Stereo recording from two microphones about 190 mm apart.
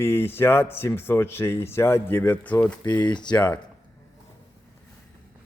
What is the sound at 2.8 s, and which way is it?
Speech, 20° left (ahead or behind).